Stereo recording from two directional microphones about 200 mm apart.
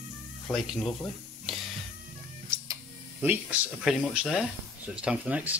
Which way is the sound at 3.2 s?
10° right (ahead or behind).